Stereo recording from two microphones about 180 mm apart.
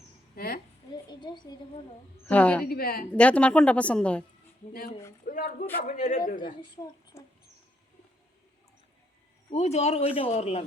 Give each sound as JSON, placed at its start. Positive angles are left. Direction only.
{"t": 0.3, "sound": "a sound", "side_deg": 55}
{"t": 1.1, "sound": "a woman's voice", "side_deg": 25}
{"t": 2.2, "sound": "a woman's voice", "side_deg": 10}
{"t": 2.6, "sound": "a woman's voice", "side_deg": 55}
{"t": 3.1, "sound": "a woman's voice", "side_deg": 5}
{"t": 5.2, "sound": "a man's voice", "side_deg": 50}
{"t": 6.6, "sound": "a woman's voice", "side_deg": 20}
{"t": 9.5, "sound": "speech", "side_deg": 35}